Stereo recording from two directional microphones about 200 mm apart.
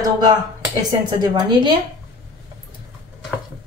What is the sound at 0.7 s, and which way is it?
A woman's voice, 20° right (ahead or behind).